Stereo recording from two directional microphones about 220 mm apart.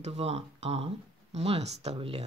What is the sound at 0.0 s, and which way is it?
Speech, 30° right (ahead or behind).